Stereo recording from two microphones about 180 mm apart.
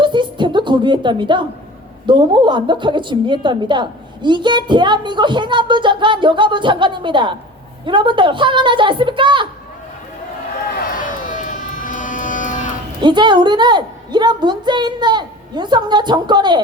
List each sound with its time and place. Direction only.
0.0 s a woman's voice: 25° right (ahead or behind)
11.1 s music: 50° left (ahead or behind)
13.0 s a woman's voice: 25° right (ahead or behind)